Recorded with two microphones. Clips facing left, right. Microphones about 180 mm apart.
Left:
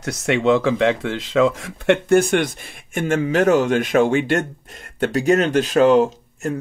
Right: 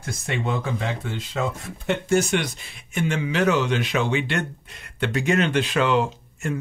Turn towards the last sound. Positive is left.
turn(degrees=40)  # may be behind; listen again after turning